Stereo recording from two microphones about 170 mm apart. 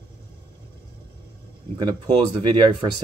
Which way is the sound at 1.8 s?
25° right (ahead or behind).